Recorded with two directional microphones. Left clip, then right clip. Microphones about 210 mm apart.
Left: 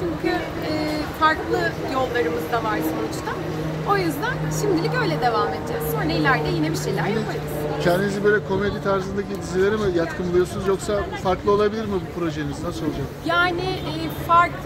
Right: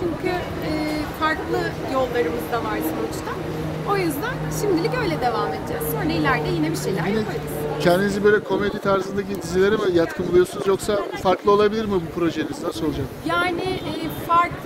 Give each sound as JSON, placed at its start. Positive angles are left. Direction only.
{"t": 1.2, "sound": "speech", "side_deg": -10}
{"t": 4.6, "sound": "speech", "side_deg": -10}
{"t": 7.8, "sound": "speech", "side_deg": -55}
{"t": 13.3, "sound": "a woman's voice", "side_deg": -5}